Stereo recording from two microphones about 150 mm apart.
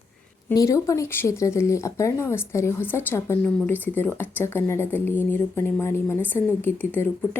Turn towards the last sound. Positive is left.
turn(degrees=10)  # may be behind; listen again after turning